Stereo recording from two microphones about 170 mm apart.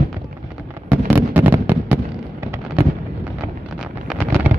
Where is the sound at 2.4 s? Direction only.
15° right (ahead or behind).